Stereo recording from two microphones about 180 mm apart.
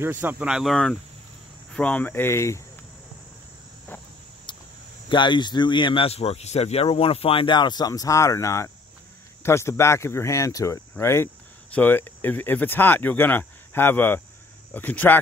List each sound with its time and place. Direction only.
0.0 s speech: 10° right (ahead or behind); by 2.6 s 15° left (ahead or behind)
4.5 s cricket: 25° left (ahead or behind)
5.1 s speech: 25° left (ahead or behind); by 15.1 s 10° left (ahead or behind)